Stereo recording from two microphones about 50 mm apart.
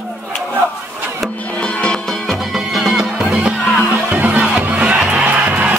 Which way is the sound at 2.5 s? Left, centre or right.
Centre.